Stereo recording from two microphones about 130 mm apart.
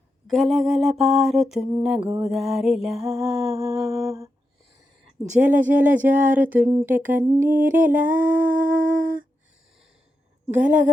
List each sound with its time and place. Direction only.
0.3 s music: centre (ahead or behind)
2.0 s music: 25° right (ahead or behind)
2.3 s music: centre (ahead or behind)
3.9 s humming: 5° right (ahead or behind)
5.4 s speech: 15° right (ahead or behind)
10.5 s speech: 10° right (ahead or behind)